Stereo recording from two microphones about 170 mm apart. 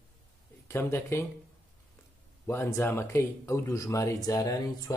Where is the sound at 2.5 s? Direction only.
15° left (ahead or behind).